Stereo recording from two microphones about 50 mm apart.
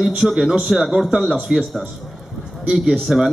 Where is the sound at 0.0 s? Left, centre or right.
Centre.